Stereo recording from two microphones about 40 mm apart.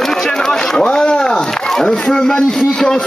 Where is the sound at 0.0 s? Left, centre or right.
Centre.